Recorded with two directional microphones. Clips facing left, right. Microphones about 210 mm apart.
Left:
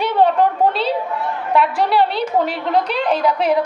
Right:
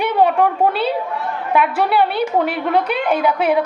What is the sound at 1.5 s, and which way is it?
A woman's voice, 10° right (ahead or behind).